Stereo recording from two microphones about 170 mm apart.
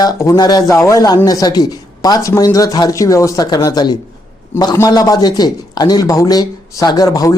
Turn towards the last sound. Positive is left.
turn(degrees=20)  # may be behind; listen again after turning